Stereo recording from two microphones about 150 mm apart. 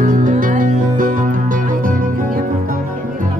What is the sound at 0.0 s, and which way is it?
Music, 65° right (ahead or behind).